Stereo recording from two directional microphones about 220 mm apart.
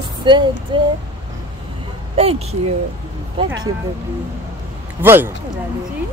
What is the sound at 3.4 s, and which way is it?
Speech, 25° right (ahead or behind).